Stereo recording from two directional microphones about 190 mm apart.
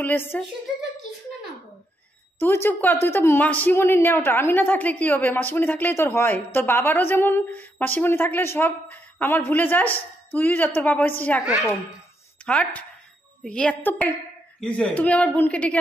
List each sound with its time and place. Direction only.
0.0 s a woman's voice: 10° left (ahead or behind)
2.4 s a woman's voice: 10° left (ahead or behind)
11.4 s a woman's voice: centre (ahead or behind)